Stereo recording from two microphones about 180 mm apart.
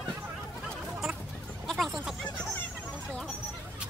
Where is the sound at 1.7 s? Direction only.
Centre (ahead or behind).